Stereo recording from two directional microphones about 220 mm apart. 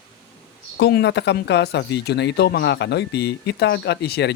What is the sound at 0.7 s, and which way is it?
Speech, 50° left (ahead or behind).